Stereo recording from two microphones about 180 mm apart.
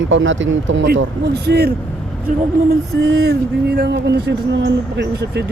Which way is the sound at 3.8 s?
70° right (ahead or behind).